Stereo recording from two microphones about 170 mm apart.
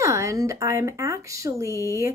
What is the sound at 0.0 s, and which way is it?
A woman's voice, 15° right (ahead or behind).